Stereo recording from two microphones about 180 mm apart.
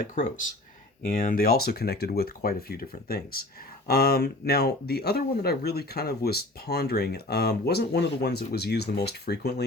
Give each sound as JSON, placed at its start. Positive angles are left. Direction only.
{"t": 0.2, "sound": "speech", "side_deg": 45}